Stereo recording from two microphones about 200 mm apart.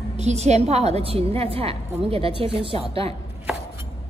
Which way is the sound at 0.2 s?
35° right (ahead or behind).